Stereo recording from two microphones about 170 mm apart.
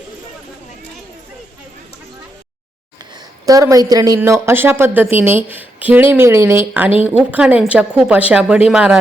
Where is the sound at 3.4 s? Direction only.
20° right (ahead or behind).